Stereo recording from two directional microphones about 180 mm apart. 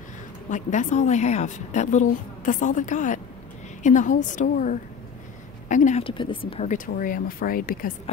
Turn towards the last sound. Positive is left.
turn(degrees=55)  # may be behind; listen again after turning